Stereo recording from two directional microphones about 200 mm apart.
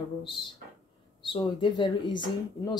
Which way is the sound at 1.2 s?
25° left (ahead or behind).